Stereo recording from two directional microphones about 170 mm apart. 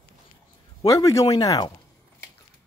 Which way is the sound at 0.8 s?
20° left (ahead or behind).